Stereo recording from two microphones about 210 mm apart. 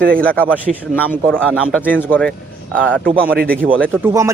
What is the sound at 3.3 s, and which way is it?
Speech, 45° right (ahead or behind).